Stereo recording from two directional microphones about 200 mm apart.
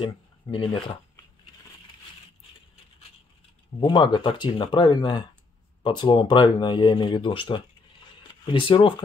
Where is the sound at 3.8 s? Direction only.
25° left (ahead or behind).